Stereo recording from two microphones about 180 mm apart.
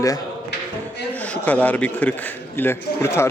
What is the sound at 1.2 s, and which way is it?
A man's voice, 10° left (ahead or behind).